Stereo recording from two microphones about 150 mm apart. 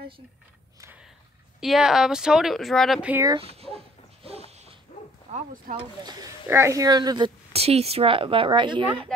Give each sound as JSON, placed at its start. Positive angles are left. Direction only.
{"t": 0.7, "sound": "a sound", "side_deg": -15}
{"t": 1.6, "sound": "a woman's voice", "side_deg": 0}
{"t": 3.0, "sound": "speech", "side_deg": -10}
{"t": 3.3, "sound": "a sound", "side_deg": -40}
{"t": 5.3, "sound": "speech", "side_deg": -60}
{"t": 6.0, "sound": "speech", "side_deg": -25}